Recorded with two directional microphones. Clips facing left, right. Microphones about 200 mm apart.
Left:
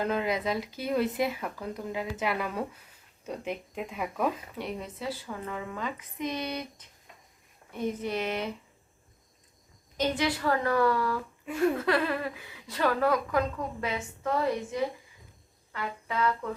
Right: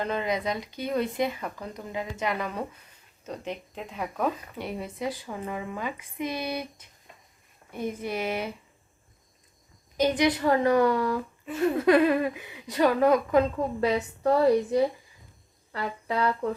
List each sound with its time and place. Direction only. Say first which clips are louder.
0.0 s speech: even; 5° left (ahead or behind)
4.9 s speech: right 3 dB; 15° right (ahead or behind)
10.0 s a woman's voice: right 5 dB; 20° right (ahead or behind)
13.8 s a woman's voice: right 9 dB; 35° right (ahead or behind)